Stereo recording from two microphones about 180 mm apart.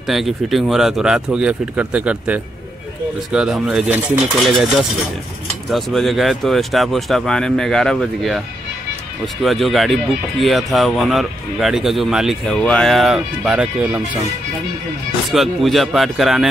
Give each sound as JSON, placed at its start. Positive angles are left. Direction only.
{"t": 0.1, "sound": "speech", "side_deg": 0}
{"t": 9.4, "sound": "speech", "side_deg": 0}
{"t": 15.3, "sound": "speech", "side_deg": 0}